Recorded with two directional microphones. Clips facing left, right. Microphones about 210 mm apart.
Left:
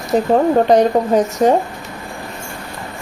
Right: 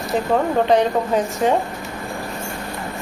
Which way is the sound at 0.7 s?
40° left (ahead or behind).